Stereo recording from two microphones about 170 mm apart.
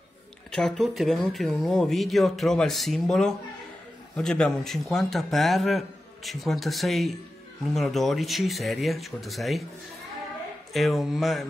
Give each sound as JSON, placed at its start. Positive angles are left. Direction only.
{"t": 0.5, "sound": "a man's voice", "side_deg": 5}
{"t": 10.7, "sound": "a man's voice", "side_deg": 0}